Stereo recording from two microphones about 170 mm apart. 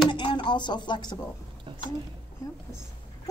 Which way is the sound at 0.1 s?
30° left (ahead or behind).